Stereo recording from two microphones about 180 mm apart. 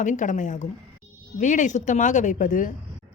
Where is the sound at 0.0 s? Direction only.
45° left (ahead or behind).